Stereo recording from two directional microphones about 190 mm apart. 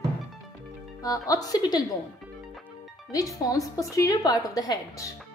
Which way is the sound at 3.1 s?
20° left (ahead or behind).